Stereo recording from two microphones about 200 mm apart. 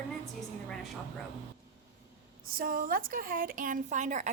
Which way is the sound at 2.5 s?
45° right (ahead or behind).